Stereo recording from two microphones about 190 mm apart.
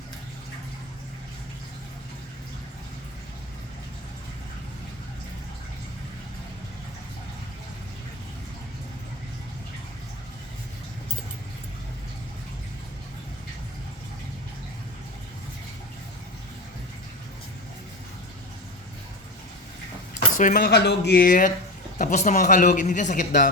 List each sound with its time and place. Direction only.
20.1 s speech: 45° left (ahead or behind)